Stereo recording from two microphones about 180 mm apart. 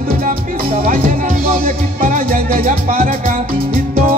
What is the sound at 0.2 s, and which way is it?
Music, 50° right (ahead or behind).